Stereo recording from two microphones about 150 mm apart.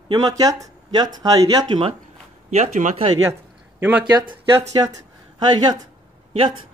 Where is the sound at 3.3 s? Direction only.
15° right (ahead or behind).